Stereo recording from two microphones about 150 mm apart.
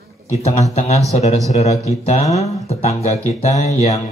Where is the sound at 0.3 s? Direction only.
45° left (ahead or behind).